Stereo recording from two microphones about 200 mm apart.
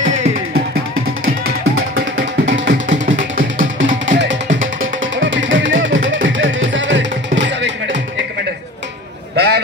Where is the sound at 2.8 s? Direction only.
40° right (ahead or behind).